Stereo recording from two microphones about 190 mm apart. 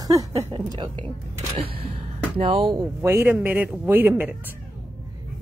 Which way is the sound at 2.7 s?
15° right (ahead or behind).